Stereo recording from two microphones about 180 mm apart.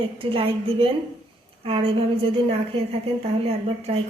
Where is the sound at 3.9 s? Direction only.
35° right (ahead or behind).